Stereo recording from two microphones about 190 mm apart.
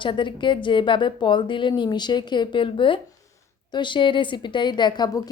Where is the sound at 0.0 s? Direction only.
25° left (ahead or behind).